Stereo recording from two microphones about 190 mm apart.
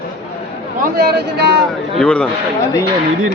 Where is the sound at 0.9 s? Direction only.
60° right (ahead or behind).